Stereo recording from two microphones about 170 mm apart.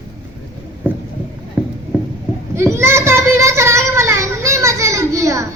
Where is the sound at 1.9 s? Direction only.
10° right (ahead or behind).